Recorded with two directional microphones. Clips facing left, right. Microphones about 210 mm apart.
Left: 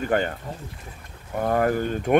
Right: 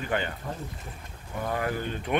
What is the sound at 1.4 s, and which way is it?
Speech, 50° left (ahead or behind).